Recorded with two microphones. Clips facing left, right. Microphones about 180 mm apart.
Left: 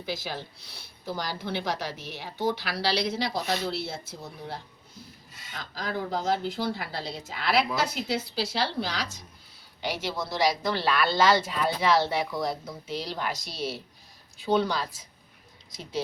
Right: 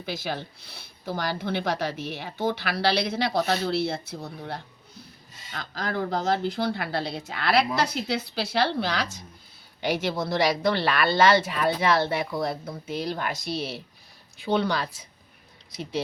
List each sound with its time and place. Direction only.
0.0 s speech: 55° right (ahead or behind)
5.7 s speech: 70° right (ahead or behind)